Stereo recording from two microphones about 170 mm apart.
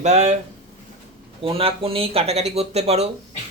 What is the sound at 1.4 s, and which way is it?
Speech, 35° right (ahead or behind).